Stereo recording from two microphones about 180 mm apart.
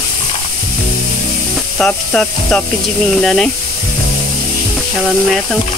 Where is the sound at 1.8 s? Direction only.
5° left (ahead or behind).